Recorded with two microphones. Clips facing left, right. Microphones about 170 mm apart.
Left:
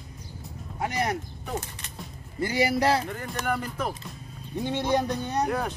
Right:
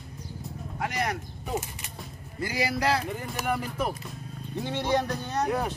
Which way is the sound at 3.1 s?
5° right (ahead or behind).